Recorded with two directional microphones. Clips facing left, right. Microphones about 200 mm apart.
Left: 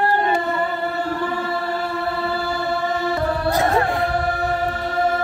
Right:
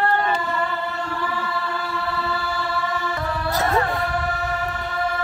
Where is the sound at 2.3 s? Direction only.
35° left (ahead or behind).